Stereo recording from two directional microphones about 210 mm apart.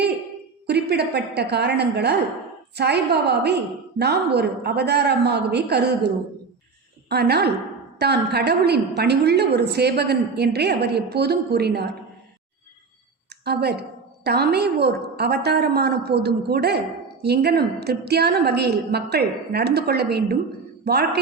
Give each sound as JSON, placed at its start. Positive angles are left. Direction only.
{"t": 0.7, "sound": "a woman's voice", "side_deg": -50}
{"t": 7.1, "sound": "a woman's voice", "side_deg": -50}
{"t": 13.4, "sound": "a woman's voice", "side_deg": -50}